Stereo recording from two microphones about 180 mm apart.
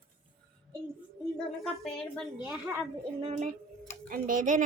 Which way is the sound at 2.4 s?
10° right (ahead or behind).